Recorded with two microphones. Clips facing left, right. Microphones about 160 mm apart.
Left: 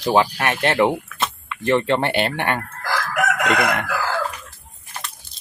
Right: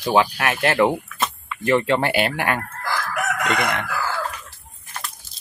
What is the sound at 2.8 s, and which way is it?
Chicken, 90° left.